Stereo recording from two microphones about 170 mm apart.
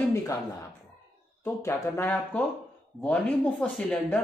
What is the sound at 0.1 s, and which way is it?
Speech, 20° left (ahead or behind).